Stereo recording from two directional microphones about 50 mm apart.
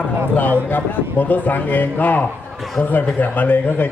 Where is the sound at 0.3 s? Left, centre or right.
Left.